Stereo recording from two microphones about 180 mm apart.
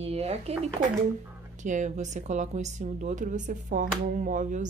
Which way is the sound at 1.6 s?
45° right (ahead or behind).